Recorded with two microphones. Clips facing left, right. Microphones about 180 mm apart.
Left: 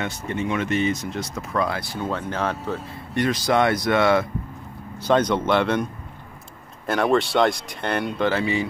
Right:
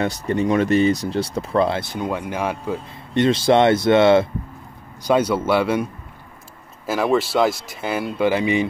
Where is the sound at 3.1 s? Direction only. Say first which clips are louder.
Right 5 dB; 25° right (ahead or behind).